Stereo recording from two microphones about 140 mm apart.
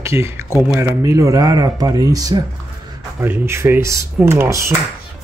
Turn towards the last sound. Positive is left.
turn(degrees=-20)  # may be behind; listen again after turning